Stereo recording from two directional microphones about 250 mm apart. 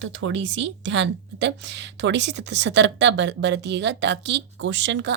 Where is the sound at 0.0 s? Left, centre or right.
Right.